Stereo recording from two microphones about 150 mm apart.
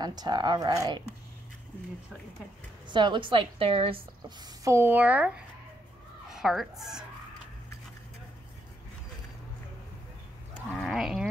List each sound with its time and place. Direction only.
0.0 s speech: 25° right (ahead or behind)
2.9 s speech: 30° right (ahead or behind)
4.6 s speech: 15° right (ahead or behind)
10.8 s a sound: centre (ahead or behind)